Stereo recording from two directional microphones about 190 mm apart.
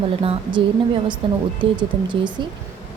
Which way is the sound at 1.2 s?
30° right (ahead or behind).